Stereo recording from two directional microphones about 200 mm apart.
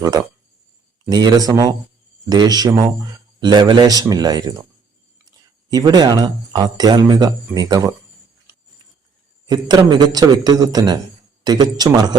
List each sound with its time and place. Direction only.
1.0 s speech: 20° right (ahead or behind)
5.7 s speech: 20° right (ahead or behind)
9.5 s speech: 20° right (ahead or behind)